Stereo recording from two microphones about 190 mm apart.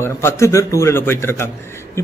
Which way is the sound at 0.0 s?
15° left (ahead or behind).